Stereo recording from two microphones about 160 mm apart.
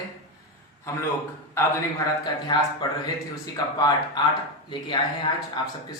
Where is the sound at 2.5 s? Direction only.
25° left (ahead or behind).